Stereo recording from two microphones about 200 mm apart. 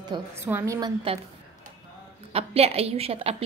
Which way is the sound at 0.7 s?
25° right (ahead or behind).